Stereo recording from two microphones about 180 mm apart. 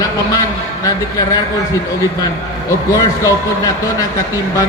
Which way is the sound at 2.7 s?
15° left (ahead or behind).